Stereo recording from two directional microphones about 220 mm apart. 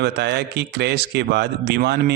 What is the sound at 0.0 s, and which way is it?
A man's voice, 50° right (ahead or behind).